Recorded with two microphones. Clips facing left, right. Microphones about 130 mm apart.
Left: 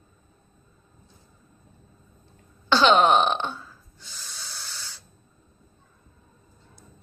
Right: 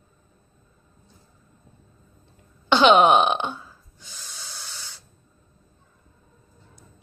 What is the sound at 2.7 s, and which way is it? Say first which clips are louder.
Burping: right 3 dB; 15° right (ahead or behind).